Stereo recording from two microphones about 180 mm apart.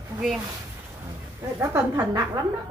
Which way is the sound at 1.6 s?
15° right (ahead or behind).